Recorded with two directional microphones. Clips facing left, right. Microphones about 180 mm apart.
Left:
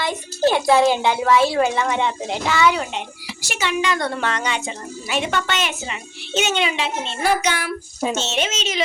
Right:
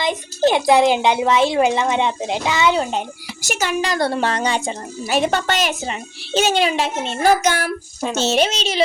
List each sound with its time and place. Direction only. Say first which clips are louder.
0.0 s a child's voice: right 2 dB; 20° right (ahead or behind)
3.4 s a woman's voice: right 1 dB; 45° right (ahead or behind)